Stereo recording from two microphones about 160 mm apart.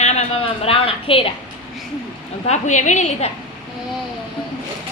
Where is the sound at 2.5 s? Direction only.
50° left (ahead or behind).